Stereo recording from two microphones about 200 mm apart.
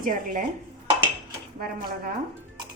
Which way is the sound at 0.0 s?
45° right (ahead or behind).